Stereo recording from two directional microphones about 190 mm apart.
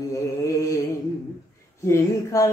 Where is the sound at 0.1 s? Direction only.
15° left (ahead or behind).